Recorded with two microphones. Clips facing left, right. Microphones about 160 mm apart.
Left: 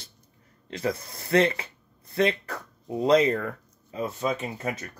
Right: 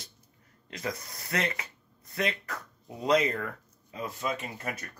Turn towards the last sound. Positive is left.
turn(degrees=25)  # may be behind; listen again after turning